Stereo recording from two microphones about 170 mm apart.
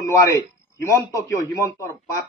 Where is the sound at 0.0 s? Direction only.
20° left (ahead or behind).